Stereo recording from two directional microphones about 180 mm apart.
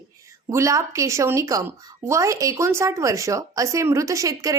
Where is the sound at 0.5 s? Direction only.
15° right (ahead or behind).